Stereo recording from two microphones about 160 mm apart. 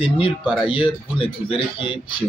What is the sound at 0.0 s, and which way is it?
Speech, 35° left (ahead or behind).